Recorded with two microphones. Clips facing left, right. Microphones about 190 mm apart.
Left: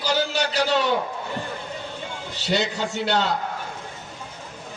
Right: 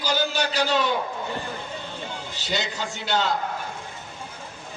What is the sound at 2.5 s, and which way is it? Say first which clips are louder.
Speech: left 5 dB; 65° left (ahead or behind).